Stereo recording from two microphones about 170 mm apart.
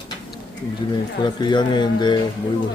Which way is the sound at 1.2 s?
25° left (ahead or behind).